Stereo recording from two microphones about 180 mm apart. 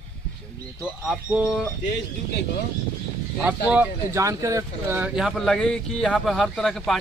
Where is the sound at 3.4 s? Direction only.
10° right (ahead or behind).